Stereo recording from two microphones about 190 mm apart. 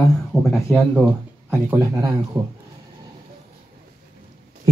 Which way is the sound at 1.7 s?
15° right (ahead or behind).